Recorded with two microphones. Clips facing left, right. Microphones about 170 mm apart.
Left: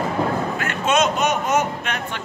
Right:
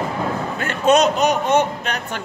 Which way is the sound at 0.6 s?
35° right (ahead or behind).